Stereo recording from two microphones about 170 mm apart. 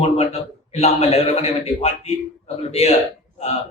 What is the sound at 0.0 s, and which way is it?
A man's voice, 40° left (ahead or behind).